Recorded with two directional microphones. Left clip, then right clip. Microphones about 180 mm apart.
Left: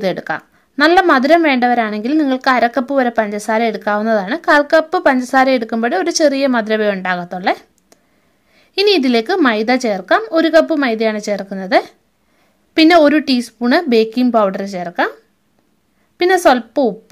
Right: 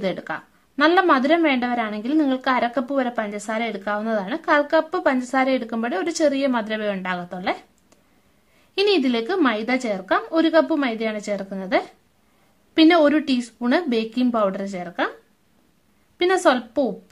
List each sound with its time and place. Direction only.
0.0 s a woman's voice: 35° left (ahead or behind)
8.9 s a woman's voice: 30° left (ahead or behind)
16.2 s a woman's voice: 30° left (ahead or behind)